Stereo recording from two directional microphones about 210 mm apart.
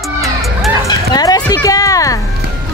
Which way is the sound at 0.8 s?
20° left (ahead or behind).